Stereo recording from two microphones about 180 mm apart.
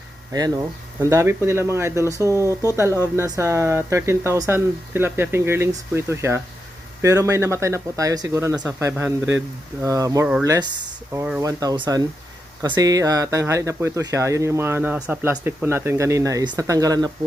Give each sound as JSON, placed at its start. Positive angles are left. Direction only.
{"t": 1.0, "sound": "speech", "side_deg": -15}